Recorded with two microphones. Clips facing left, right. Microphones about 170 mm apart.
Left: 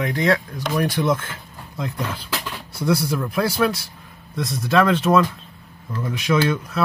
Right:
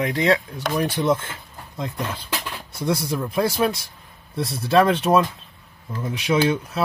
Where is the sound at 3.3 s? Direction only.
25° right (ahead or behind).